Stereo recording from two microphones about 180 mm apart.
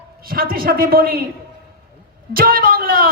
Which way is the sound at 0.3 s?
55° right (ahead or behind).